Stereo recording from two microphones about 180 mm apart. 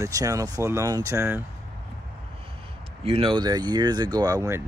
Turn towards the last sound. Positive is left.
turn(degrees=-15)  # may be behind; listen again after turning